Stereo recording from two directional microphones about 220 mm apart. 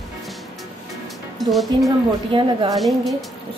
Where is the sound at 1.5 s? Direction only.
Centre (ahead or behind).